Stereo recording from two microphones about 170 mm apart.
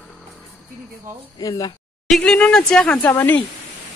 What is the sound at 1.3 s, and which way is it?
Speech, 20° left (ahead or behind).